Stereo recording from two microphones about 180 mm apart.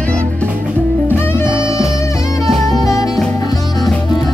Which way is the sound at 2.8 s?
20° left (ahead or behind).